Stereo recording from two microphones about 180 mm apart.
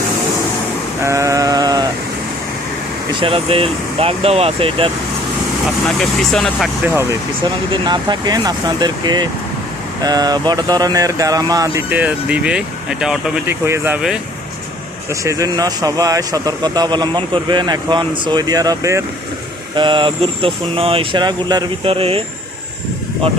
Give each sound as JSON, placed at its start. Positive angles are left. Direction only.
{"t": 1.0, "sound": "sheep", "side_deg": -15}
{"t": 3.2, "sound": "speech", "side_deg": -30}
{"t": 6.0, "sound": "speech", "side_deg": 0}
{"t": 7.7, "sound": "speech", "side_deg": -25}
{"t": 15.1, "sound": "speech", "side_deg": -15}